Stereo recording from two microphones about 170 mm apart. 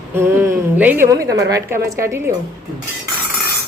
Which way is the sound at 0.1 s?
15° right (ahead or behind).